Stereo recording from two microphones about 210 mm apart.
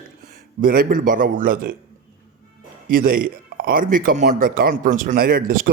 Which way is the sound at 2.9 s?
45° right (ahead or behind).